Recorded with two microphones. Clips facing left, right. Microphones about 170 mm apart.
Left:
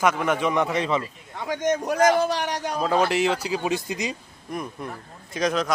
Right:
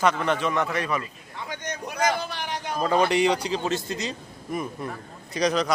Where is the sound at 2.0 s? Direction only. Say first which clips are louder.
Left 5 dB; 45° left (ahead or behind).